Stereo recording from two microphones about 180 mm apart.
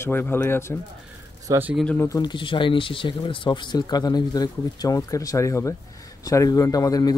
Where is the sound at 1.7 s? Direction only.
5° left (ahead or behind).